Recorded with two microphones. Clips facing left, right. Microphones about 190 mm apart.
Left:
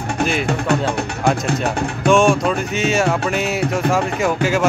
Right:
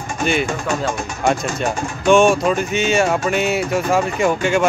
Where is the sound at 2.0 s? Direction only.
Centre (ahead or behind).